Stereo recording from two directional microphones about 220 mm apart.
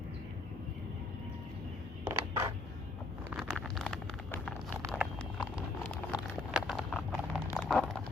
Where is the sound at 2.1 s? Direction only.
10° right (ahead or behind).